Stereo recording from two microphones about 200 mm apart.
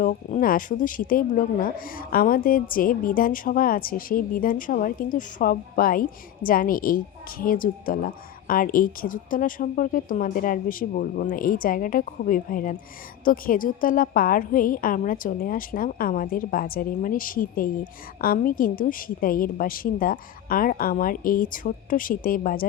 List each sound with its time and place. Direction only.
0.0 s a woman's voice: 40° left (ahead or behind)